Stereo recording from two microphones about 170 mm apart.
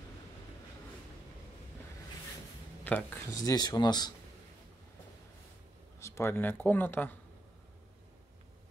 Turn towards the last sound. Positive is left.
turn(degrees=10)  # may be behind; listen again after turning